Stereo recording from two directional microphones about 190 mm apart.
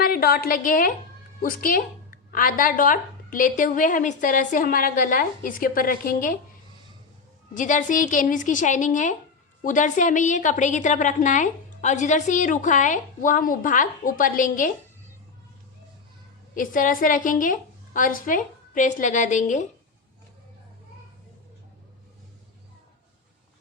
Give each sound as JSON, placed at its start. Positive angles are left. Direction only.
{"t": 0.0, "sound": "a woman's voice", "side_deg": 50}
{"t": 7.5, "sound": "a woman's voice", "side_deg": 40}
{"t": 16.6, "sound": "a woman's voice", "side_deg": 45}